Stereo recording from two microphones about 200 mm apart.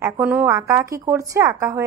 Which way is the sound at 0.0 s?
10° right (ahead or behind).